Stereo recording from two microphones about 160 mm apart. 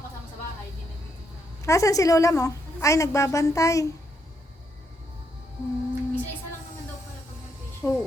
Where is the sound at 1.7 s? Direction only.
20° left (ahead or behind).